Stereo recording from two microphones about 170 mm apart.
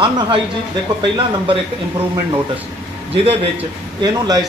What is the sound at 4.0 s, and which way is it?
Speech, 25° right (ahead or behind).